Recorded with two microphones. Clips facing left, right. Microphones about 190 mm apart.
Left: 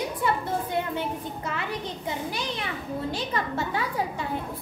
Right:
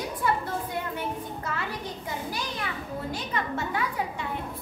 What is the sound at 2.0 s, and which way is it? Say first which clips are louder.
A child's voice: left 3 dB; 25° left (ahead or behind).